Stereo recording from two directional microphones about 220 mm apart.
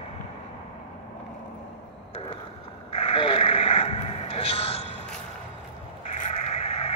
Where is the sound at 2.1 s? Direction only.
25° left (ahead or behind).